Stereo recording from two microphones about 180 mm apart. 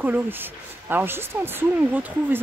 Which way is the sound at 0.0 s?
10° right (ahead or behind).